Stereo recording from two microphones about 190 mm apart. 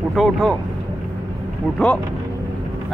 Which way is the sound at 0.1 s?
Centre (ahead or behind).